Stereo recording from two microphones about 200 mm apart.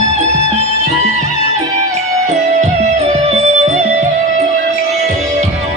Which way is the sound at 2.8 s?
30° right (ahead or behind).